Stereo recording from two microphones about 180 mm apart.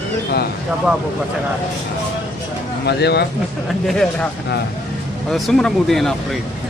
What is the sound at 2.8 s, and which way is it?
Speech, 65° left (ahead or behind).